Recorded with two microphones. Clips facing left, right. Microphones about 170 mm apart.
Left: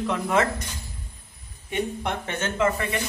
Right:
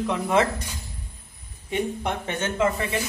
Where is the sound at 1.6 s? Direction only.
15° right (ahead or behind).